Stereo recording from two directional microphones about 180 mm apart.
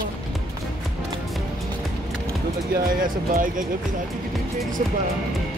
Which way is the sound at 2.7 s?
50° right (ahead or behind).